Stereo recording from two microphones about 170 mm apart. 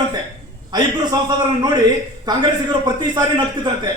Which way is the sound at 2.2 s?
25° right (ahead or behind).